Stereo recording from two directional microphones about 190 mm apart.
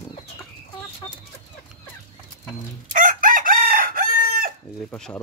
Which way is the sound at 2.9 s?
45° right (ahead or behind).